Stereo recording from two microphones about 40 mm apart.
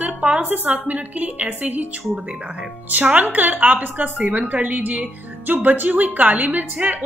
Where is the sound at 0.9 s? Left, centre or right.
Right.